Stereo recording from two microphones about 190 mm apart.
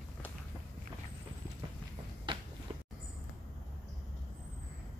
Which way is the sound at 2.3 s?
25° right (ahead or behind).